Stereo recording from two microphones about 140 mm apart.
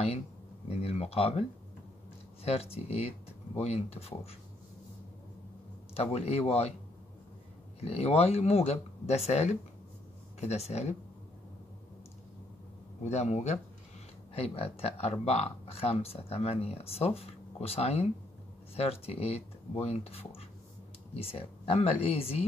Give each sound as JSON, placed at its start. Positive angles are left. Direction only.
{"t": 0.7, "sound": "speech", "side_deg": 45}
{"t": 2.4, "sound": "speech", "side_deg": 45}
{"t": 5.9, "sound": "speech", "side_deg": 50}
{"t": 7.8, "sound": "speech", "side_deg": 45}
{"t": 13.0, "sound": "speech", "side_deg": 55}